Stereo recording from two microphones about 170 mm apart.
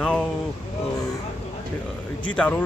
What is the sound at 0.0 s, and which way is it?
Vehicle, 5° left (ahead or behind).